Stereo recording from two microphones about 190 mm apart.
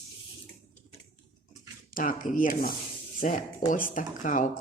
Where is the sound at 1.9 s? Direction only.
45° left (ahead or behind).